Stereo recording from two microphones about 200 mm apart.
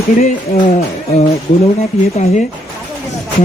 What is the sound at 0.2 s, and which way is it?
Speech, 45° left (ahead or behind).